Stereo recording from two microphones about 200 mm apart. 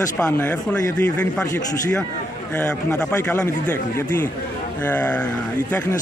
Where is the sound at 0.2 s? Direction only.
5° left (ahead or behind).